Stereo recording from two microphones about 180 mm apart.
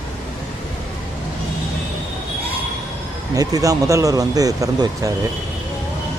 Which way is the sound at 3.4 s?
20° right (ahead or behind).